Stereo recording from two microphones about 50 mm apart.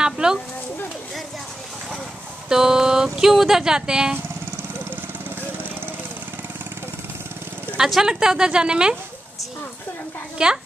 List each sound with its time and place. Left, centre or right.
0.0 s a sound: centre
2.5 s speech: centre
7.9 s speech: centre
10.3 s speech: centre